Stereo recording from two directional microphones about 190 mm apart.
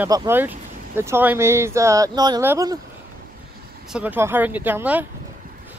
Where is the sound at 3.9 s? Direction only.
10° right (ahead or behind).